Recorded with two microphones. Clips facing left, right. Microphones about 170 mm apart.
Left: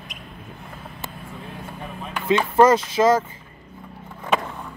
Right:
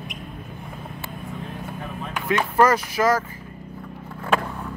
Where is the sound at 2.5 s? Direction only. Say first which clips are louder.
Left 3 dB; 25° left (ahead or behind).